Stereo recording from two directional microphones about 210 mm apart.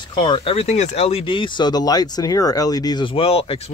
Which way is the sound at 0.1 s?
25° left (ahead or behind).